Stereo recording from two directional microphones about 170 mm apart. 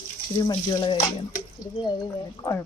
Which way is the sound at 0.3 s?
25° left (ahead or behind).